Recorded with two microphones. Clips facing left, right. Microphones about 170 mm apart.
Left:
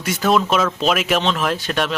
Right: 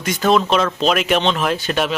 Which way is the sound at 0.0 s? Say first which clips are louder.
Right 1 dB; 5° left (ahead or behind).